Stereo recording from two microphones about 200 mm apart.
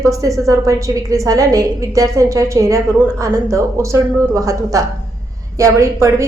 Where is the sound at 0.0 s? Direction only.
15° right (ahead or behind).